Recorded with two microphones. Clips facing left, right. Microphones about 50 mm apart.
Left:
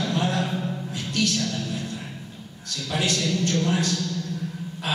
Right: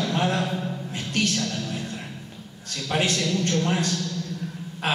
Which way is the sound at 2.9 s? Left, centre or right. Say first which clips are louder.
Right 1 dB; right.